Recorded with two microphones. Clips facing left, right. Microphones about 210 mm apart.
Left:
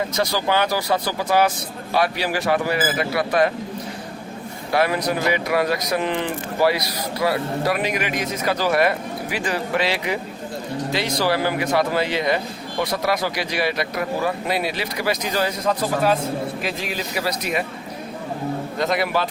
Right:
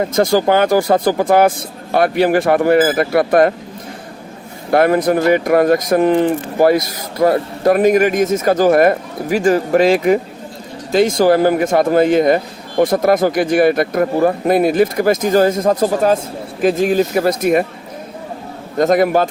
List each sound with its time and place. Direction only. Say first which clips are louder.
0.0 s speech: right 9 dB; 50° right (ahead or behind)
4.7 s speech: right 8 dB; 50° right (ahead or behind)
18.8 s speech: right 10 dB; 45° right (ahead or behind)